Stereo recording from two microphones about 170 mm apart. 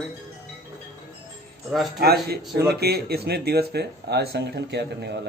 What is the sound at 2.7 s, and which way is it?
Speech, 65° right (ahead or behind).